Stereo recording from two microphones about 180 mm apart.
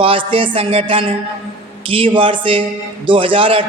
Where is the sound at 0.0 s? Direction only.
30° right (ahead or behind).